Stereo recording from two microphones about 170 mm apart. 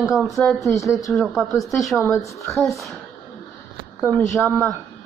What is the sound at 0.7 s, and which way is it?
Speech, 20° left (ahead or behind).